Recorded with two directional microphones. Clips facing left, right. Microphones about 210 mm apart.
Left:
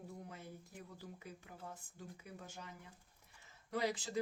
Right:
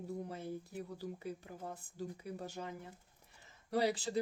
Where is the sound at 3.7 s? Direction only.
35° right (ahead or behind).